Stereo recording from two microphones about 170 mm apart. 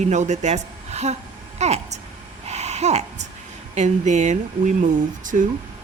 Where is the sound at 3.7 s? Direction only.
45° right (ahead or behind).